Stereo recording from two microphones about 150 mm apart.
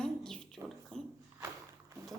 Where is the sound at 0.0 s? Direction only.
5° left (ahead or behind).